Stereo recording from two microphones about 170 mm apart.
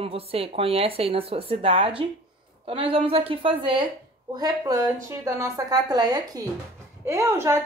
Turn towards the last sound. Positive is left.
turn(degrees=-15)  # may be behind; listen again after turning